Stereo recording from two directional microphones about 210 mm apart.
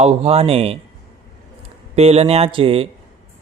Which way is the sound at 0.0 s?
30° right (ahead or behind).